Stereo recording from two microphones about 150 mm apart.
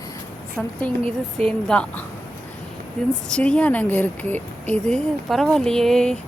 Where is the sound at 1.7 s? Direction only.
5° left (ahead or behind).